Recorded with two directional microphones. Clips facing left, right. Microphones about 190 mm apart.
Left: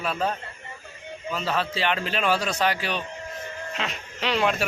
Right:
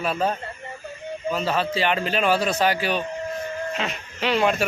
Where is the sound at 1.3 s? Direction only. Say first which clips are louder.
Right 3 dB; centre (ahead or behind).